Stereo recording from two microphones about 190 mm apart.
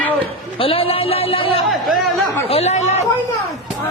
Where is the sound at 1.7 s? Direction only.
Centre (ahead or behind).